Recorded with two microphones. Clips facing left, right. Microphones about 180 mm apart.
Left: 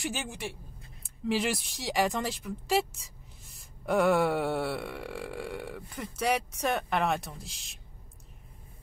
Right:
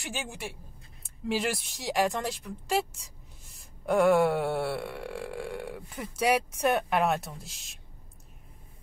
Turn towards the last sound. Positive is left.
turn(degrees=0)  # may be behind; listen again after turning